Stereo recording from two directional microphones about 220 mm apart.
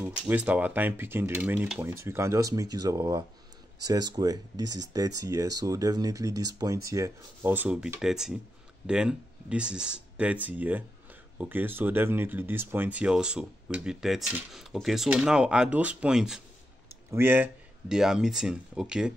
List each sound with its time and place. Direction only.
0.3 s speech: 5° right (ahead or behind)